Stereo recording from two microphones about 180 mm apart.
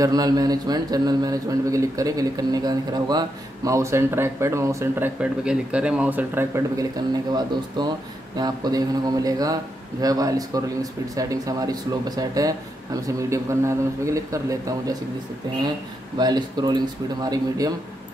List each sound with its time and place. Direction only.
0.0 s speech: 20° right (ahead or behind)
16.2 s speech: 25° right (ahead or behind)